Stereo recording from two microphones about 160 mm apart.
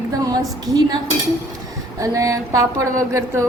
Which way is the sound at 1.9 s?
20° right (ahead or behind).